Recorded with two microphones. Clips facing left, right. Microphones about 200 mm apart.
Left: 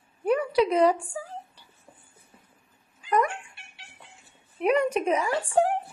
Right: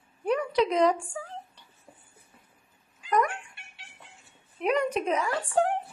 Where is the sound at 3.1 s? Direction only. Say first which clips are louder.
Left 1 dB; 5° left (ahead or behind).